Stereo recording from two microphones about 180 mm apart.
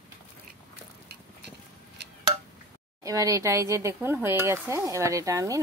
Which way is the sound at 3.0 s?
20° right (ahead or behind).